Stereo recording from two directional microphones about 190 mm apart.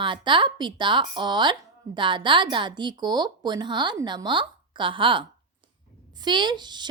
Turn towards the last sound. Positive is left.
turn(degrees=-25)  # may be behind; listen again after turning